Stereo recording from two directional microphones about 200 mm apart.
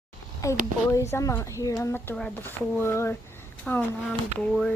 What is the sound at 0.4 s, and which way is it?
Speech, 15° left (ahead or behind).